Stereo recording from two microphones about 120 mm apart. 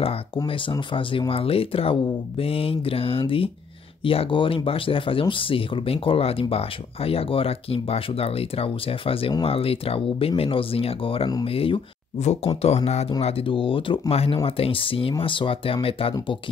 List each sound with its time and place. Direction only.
0.5 s speech: 45° left (ahead or behind)
12.6 s speech: 60° left (ahead or behind)
13.2 s speech: 50° left (ahead or behind)